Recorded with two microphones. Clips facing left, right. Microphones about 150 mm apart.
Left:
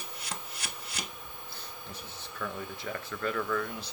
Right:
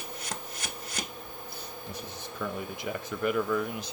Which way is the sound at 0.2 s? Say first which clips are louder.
Even; 45° right (ahead or behind).